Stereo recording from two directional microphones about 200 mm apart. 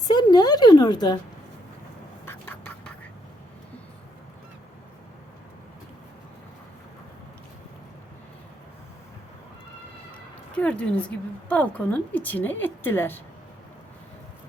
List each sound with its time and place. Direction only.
0.1 s speech: 20° left (ahead or behind)
2.2 s a sound: 10° left (ahead or behind)
10.6 s a woman's voice: 5° left (ahead or behind)